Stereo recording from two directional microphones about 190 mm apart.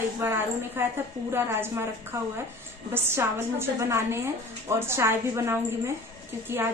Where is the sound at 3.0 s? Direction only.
10° right (ahead or behind).